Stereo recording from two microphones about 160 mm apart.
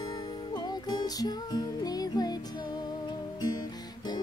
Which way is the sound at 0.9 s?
25° left (ahead or behind).